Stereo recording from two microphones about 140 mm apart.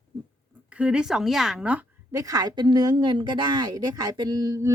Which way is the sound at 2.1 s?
25° right (ahead or behind).